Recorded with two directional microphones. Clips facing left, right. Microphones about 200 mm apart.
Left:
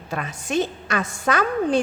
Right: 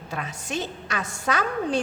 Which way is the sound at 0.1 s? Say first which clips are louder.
Left 6 dB; 55° left (ahead or behind).